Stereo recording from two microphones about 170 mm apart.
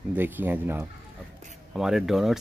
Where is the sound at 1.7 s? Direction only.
Centre (ahead or behind).